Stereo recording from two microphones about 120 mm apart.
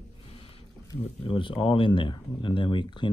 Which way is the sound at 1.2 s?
45° left (ahead or behind).